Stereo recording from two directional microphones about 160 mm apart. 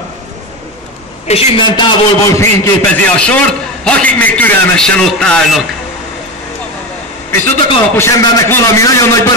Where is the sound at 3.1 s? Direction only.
5° left (ahead or behind).